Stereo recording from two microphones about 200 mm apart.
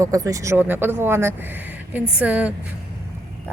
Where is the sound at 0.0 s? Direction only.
15° right (ahead or behind).